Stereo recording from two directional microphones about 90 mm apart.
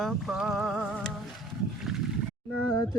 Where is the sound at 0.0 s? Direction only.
Centre (ahead or behind).